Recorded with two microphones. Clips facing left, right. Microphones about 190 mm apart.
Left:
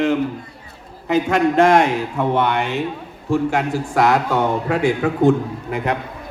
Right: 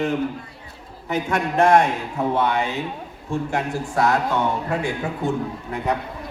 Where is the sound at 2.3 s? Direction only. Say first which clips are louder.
Left 2 dB; 70° left (ahead or behind).